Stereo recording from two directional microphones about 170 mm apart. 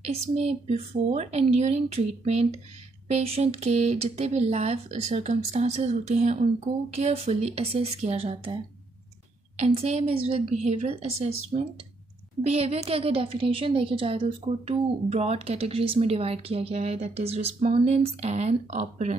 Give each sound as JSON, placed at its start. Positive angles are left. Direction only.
{"t": 0.0, "sound": "a woman's voice", "side_deg": -40}
{"t": 9.6, "sound": "a woman's voice", "side_deg": -40}